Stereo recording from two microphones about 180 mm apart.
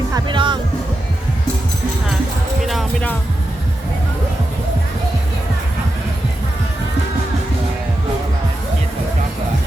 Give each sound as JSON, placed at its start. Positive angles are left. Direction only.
{"t": 0.1, "sound": "music", "side_deg": -25}
{"t": 2.6, "sound": "music", "side_deg": 0}